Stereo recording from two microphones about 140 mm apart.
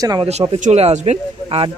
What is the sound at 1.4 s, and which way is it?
Speech, 40° right (ahead or behind).